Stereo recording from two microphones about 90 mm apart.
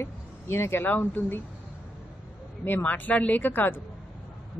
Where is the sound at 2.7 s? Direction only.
20° left (ahead or behind).